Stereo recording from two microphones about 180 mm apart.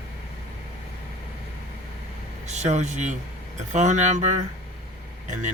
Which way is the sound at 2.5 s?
40° right (ahead or behind).